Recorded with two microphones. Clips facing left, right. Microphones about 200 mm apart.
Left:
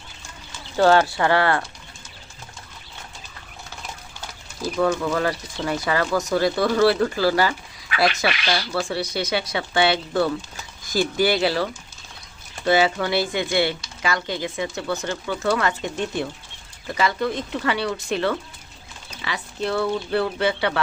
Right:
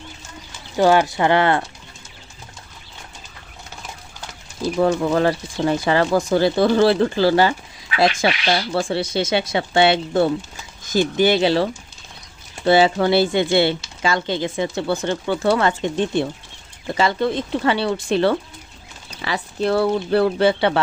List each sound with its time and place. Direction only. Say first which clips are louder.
0.8 s speech: right 1 dB; 15° right (ahead or behind)
4.8 s speech: right 4 dB; 30° right (ahead or behind)